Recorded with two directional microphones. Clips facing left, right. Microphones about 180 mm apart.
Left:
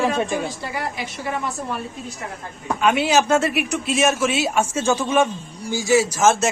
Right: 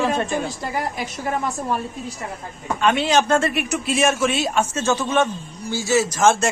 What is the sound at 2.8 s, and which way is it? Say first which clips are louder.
Speech: even; 10° left (ahead or behind).